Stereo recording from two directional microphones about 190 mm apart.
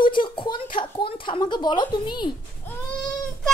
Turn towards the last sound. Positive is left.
turn(degrees=5)  # may be behind; listen again after turning